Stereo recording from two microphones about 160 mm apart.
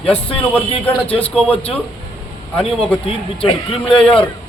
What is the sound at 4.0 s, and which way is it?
Speech, 5° left (ahead or behind).